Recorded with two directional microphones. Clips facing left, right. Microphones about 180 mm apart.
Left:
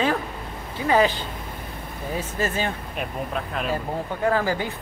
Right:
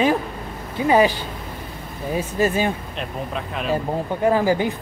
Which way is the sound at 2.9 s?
5° left (ahead or behind).